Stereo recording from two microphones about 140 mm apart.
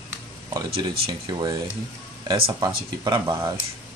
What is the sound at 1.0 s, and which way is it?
Speech, 30° right (ahead or behind).